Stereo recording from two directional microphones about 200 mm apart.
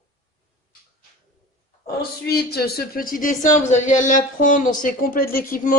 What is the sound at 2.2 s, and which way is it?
Speech, 50° left (ahead or behind).